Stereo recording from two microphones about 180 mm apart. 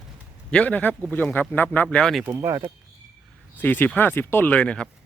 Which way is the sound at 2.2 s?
15° right (ahead or behind).